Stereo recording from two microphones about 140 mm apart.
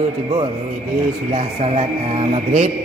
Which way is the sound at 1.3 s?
50° right (ahead or behind).